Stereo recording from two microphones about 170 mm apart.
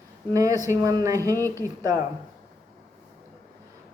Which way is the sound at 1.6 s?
20° right (ahead or behind).